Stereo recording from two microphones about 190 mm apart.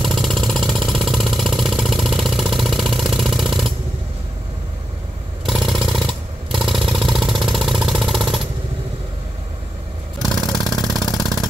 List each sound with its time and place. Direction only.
0.0 s vehicle: centre (ahead or behind)
5.4 s vehicle: centre (ahead or behind)
10.4 s vehicle: 20° left (ahead or behind)
10.8 s vehicle: centre (ahead or behind)